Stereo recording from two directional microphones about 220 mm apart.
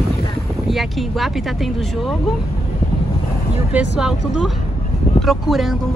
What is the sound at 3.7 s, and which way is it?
Speech, 5° right (ahead or behind).